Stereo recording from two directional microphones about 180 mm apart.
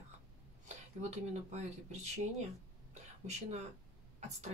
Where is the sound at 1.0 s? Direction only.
40° right (ahead or behind).